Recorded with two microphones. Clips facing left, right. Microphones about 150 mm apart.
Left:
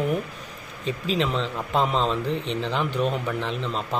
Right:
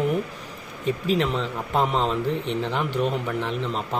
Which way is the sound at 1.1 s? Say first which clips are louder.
Right 1 dB; 15° right (ahead or behind).